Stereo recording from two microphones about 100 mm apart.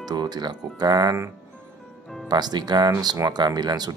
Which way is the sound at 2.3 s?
45° right (ahead or behind).